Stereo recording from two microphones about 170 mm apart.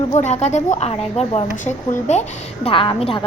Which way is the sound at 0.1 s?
40° left (ahead or behind).